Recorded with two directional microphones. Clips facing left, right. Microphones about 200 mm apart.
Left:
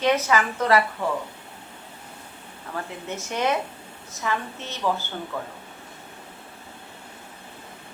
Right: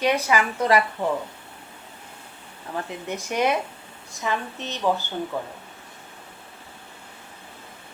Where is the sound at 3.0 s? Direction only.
15° right (ahead or behind).